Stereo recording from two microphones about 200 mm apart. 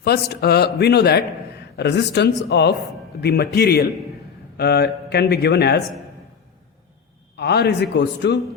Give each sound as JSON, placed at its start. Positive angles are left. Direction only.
{"t": 0.0, "sound": "a man's voice", "side_deg": 55}
{"t": 7.3, "sound": "speech", "side_deg": 55}